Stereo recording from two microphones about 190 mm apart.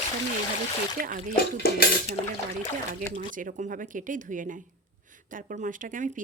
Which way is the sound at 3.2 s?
40° right (ahead or behind).